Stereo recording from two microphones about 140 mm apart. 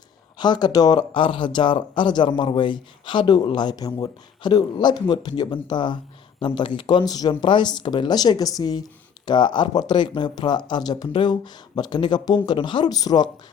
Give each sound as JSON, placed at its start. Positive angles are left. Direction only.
{"t": 0.3, "sound": "speech", "side_deg": 30}